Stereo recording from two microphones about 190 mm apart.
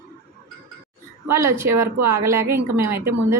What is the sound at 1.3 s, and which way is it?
A woman's voice, 15° right (ahead or behind).